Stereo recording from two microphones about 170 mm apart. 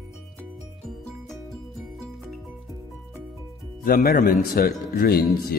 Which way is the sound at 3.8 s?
60° left (ahead or behind).